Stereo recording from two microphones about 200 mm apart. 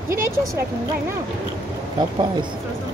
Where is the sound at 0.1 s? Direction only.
15° right (ahead or behind).